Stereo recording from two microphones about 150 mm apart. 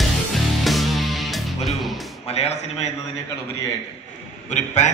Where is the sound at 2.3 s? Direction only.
45° left (ahead or behind).